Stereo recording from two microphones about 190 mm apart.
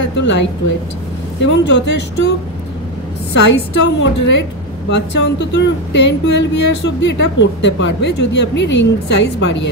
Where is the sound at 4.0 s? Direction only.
70° left (ahead or behind).